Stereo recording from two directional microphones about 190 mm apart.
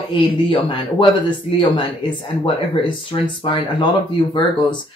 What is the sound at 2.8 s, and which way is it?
Speech, 25° left (ahead or behind).